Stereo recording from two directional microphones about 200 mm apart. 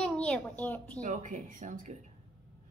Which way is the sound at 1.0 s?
40° right (ahead or behind).